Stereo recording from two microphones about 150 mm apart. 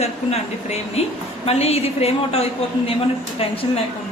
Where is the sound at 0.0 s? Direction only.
45° left (ahead or behind).